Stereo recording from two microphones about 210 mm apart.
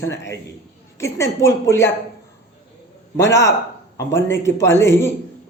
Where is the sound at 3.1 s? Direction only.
15° left (ahead or behind).